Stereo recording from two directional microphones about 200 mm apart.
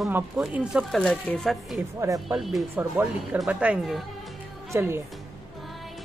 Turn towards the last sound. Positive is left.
turn(degrees=-10)  # may be behind; listen again after turning